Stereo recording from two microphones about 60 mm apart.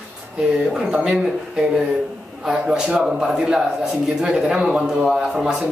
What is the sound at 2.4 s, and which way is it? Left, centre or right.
Speech, centre.